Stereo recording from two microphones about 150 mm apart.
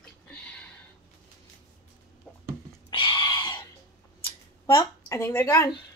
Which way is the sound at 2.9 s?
30° left (ahead or behind).